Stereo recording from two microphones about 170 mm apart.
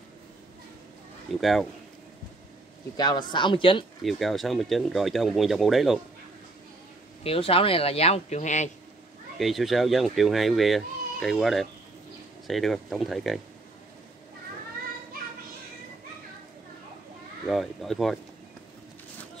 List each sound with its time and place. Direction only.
1.4 s speech: centre (ahead or behind)
3.0 s speech: 25° left (ahead or behind)
4.0 s speech: centre (ahead or behind)
7.2 s speech: 35° left (ahead or behind)
9.4 s speech: centre (ahead or behind)
17.5 s speech: centre (ahead or behind)